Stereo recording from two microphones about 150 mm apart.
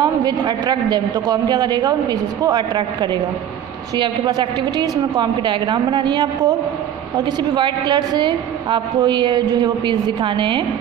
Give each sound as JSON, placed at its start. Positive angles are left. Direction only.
{"t": 0.0, "sound": "a man's voice", "side_deg": -30}